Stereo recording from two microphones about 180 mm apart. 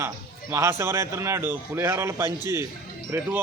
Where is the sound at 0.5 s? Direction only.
15° right (ahead or behind).